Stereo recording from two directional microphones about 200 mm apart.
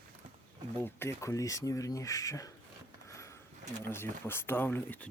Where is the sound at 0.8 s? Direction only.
10° left (ahead or behind).